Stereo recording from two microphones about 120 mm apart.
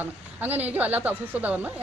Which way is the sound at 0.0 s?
15° right (ahead or behind).